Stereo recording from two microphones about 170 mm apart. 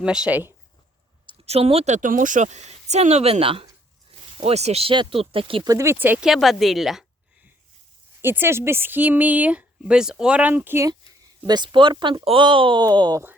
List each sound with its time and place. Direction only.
0.0 s speech: 5° right (ahead or behind)
1.3 s speech: 35° right (ahead or behind)
5.6 s speech: 15° right (ahead or behind); by 7.0 s centre (ahead or behind)
8.2 s speech: 15° right (ahead or behind)
11.4 s speech: 25° right (ahead or behind)